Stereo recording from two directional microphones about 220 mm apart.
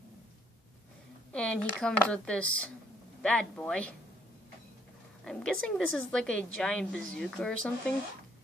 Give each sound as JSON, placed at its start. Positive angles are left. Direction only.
{"t": 1.3, "sound": "a woman's voice", "side_deg": 5}
{"t": 5.2, "sound": "a woman's voice", "side_deg": 5}